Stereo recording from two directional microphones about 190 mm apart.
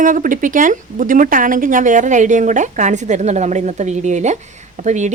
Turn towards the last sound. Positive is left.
turn(degrees=-40)  # may be behind; listen again after turning